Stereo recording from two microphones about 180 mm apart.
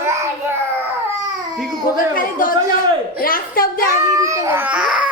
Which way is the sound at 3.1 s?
55° left (ahead or behind).